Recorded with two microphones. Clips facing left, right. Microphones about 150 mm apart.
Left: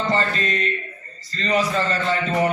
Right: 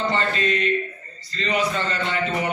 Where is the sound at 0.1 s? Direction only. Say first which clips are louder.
Even; 40° left (ahead or behind).